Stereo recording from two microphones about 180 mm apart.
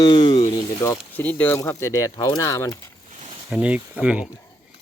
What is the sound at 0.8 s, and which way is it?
Speech, 10° left (ahead or behind).